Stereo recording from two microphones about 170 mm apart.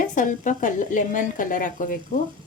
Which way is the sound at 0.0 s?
50° left (ahead or behind).